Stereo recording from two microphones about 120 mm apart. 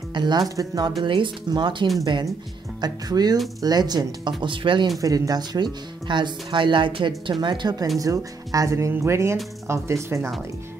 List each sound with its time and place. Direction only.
0.1 s speech: 35° right (ahead or behind)
5.0 s speech: 30° right (ahead or behind)